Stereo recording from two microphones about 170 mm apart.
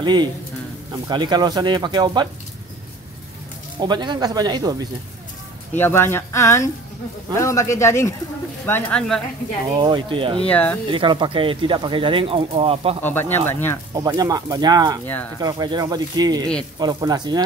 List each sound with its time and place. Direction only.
0.0 s speech: 25° right (ahead or behind)
3.8 s speech: 25° right (ahead or behind)
5.8 s speech: 15° left (ahead or behind)
9.8 s speech: 30° right (ahead or behind)
10.4 s speech: 10° left (ahead or behind)
10.9 s speech: 30° right (ahead or behind)
13.0 s speech: 10° left (ahead or behind)
13.9 s speech: 20° right (ahead or behind)